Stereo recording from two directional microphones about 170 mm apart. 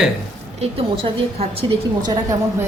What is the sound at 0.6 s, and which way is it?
A woman's voice, 35° right (ahead or behind).